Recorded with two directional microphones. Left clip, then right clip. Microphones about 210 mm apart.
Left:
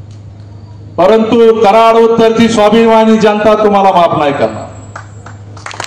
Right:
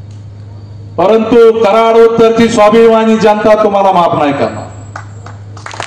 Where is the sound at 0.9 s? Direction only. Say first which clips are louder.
Even; 20° left (ahead or behind).